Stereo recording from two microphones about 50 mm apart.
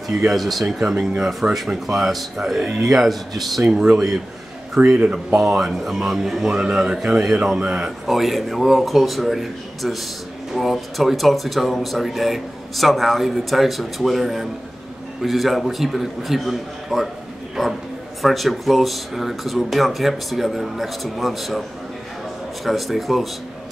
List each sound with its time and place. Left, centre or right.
0.3 s speech: centre
5.0 s speech: right
5.4 s a man's voice: centre
8.1 s speech: centre
22.7 s speech: centre